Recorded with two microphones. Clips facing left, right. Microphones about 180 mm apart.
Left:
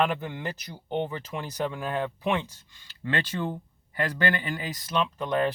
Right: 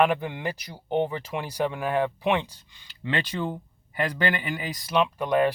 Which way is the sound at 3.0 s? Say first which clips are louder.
Right 1 dB; 15° right (ahead or behind).